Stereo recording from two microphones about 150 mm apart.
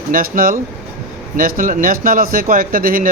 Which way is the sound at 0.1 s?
75° right (ahead or behind).